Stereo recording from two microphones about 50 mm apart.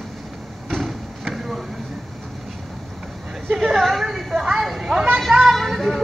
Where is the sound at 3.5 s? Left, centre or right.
Centre.